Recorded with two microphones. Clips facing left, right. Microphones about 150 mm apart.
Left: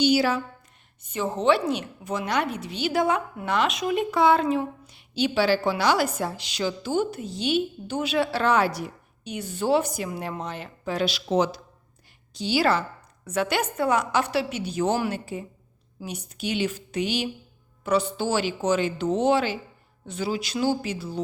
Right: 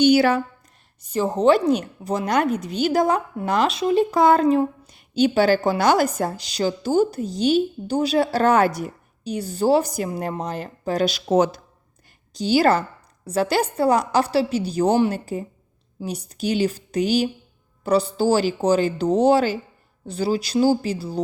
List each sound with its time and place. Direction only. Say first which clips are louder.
0.0 s speech: right 5 dB; 60° right (ahead or behind)
1.0 s a woman's voice: right 5 dB; 35° right (ahead or behind)